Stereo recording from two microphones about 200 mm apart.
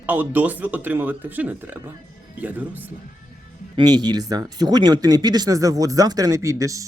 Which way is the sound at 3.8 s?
20° right (ahead or behind).